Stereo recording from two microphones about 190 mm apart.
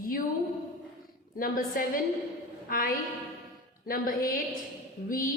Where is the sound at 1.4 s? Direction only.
50° left (ahead or behind).